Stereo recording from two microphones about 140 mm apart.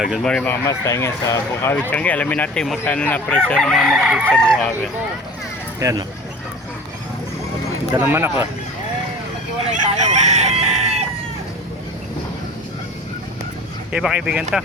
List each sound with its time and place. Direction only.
0.0 s speech: 5° right (ahead or behind)
0.3 s speech: 5° left (ahead or behind)
0.5 s speech: 20° left (ahead or behind); by 4.9 s 5° left (ahead or behind)
5.8 s speech: 25° right (ahead or behind)
7.9 s speech: 15° right (ahead or behind)
9.6 s chicken: 55° right (ahead or behind)
13.9 s speech: 5° right (ahead or behind)